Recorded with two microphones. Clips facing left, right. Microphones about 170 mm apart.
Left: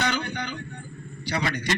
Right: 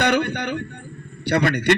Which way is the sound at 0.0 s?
65° right (ahead or behind).